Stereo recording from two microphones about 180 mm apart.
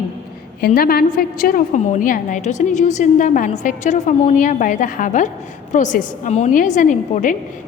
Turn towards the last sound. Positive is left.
turn(degrees=45)  # may be behind; listen again after turning